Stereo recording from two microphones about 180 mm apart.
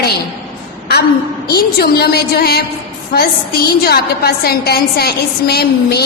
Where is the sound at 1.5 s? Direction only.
60° left (ahead or behind).